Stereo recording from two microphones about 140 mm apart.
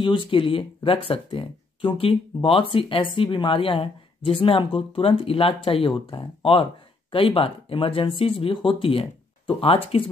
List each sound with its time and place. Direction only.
0.0 s speech: 35° left (ahead or behind)